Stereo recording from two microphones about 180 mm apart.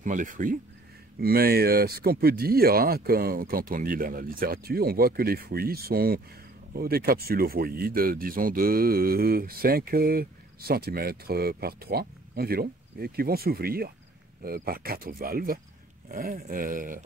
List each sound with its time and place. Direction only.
0.0 s speech: 45° right (ahead or behind)